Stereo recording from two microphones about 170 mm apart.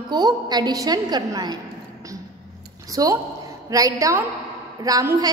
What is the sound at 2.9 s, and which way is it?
A woman's voice, 20° right (ahead or behind).